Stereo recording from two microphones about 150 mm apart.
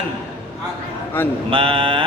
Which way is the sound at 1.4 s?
35° right (ahead or behind).